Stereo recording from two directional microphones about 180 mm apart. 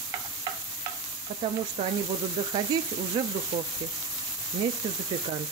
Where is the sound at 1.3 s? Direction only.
30° right (ahead or behind).